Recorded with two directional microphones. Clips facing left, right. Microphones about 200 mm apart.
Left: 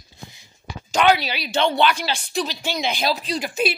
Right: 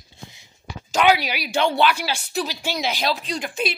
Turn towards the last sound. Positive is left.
turn(degrees=5)  # may be behind; listen again after turning